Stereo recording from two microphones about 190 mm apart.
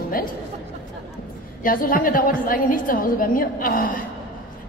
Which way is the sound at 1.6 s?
45° left (ahead or behind).